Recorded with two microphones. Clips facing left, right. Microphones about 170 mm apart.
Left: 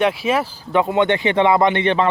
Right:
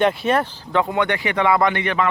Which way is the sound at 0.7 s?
20° left (ahead or behind).